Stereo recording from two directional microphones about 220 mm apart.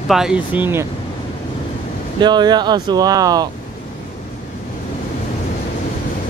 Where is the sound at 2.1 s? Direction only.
20° right (ahead or behind).